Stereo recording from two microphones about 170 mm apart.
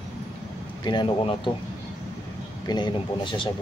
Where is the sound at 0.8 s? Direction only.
25° left (ahead or behind).